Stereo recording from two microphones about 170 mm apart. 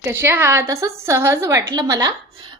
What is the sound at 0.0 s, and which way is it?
Speech, 15° right (ahead or behind).